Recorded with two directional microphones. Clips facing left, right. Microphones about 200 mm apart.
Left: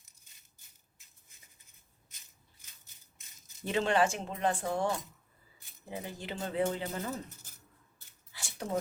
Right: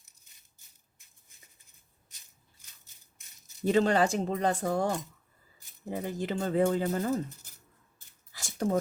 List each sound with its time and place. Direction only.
3.7 s speech: 40° right (ahead or behind)
5.9 s speech: 45° right (ahead or behind)
8.3 s a sound: 45° right (ahead or behind)